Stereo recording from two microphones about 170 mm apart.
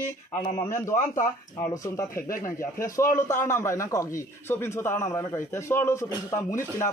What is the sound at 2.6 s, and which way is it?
A man's voice, 15° left (ahead or behind).